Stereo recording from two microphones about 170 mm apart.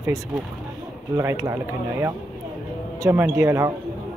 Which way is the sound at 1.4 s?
15° right (ahead or behind).